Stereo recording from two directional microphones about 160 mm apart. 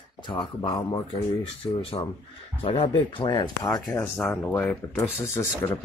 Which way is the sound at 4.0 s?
15° left (ahead or behind).